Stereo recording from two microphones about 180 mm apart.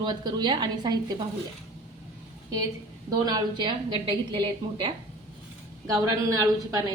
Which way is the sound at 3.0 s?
25° right (ahead or behind).